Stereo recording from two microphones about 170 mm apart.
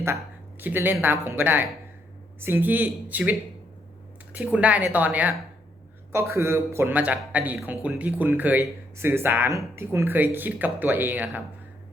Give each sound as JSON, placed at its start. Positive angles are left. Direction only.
{"t": 0.6, "sound": "speech", "side_deg": -10}